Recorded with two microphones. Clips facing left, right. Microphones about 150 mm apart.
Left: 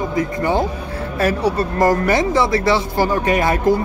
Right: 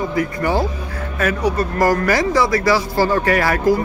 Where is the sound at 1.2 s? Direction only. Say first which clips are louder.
Left 1 dB; 30° left (ahead or behind).